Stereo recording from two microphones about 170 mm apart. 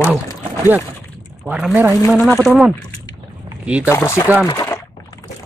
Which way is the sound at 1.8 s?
10° left (ahead or behind).